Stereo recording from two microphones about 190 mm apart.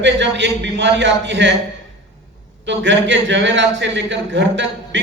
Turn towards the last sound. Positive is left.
turn(degrees=-70)  # may be behind; listen again after turning